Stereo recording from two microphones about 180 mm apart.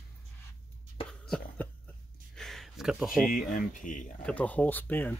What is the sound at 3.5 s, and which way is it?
Speech, 45° left (ahead or behind).